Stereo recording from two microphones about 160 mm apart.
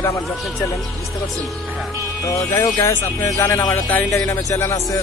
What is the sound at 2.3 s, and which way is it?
Speech, 20° left (ahead or behind).